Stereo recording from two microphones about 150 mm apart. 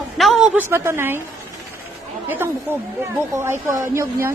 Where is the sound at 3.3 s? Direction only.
15° right (ahead or behind).